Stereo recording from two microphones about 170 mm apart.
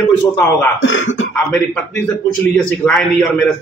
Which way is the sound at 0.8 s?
90° left.